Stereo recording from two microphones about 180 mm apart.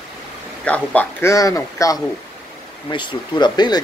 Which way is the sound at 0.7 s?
10° left (ahead or behind).